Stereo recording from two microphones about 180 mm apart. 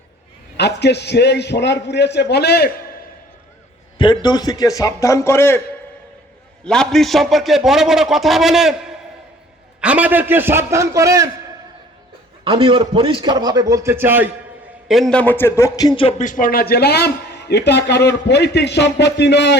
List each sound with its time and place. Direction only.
0.5 s a man's voice: 70° left (ahead or behind)
3.9 s a man's voice: 25° left (ahead or behind)
6.7 s a man's voice: 5° left (ahead or behind); by 11.3 s 20° right (ahead or behind)
12.5 s a man's voice: 30° right (ahead or behind); by 14.3 s 10° right (ahead or behind)
14.8 s a man's voice: centre (ahead or behind); by 19.5 s 70° left (ahead or behind)